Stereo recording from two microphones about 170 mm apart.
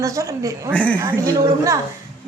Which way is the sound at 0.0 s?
20° right (ahead or behind).